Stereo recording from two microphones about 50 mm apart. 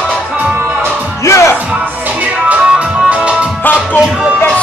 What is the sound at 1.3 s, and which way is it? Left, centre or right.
Music, left.